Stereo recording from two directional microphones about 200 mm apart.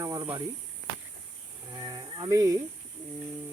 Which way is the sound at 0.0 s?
15° right (ahead or behind).